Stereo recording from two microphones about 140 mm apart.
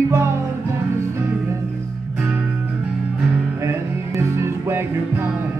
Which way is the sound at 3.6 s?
20° right (ahead or behind).